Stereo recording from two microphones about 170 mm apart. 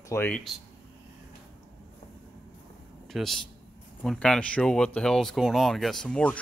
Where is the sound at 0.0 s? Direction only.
15° left (ahead or behind).